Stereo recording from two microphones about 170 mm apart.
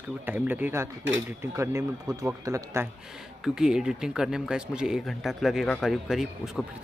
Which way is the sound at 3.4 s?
5° right (ahead or behind).